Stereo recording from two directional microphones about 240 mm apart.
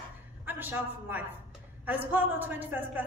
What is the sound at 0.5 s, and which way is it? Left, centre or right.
A woman's voice, centre.